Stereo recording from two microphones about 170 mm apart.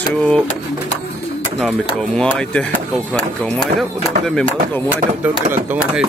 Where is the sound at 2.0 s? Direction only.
5° left (ahead or behind).